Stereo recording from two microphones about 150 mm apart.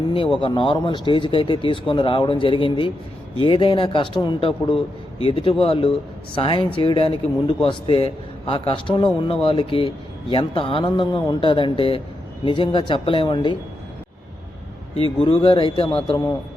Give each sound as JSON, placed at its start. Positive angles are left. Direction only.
{"t": 0.3, "sound": "a man's voice", "side_deg": 35}
{"t": 15.2, "sound": "a man's voice", "side_deg": 35}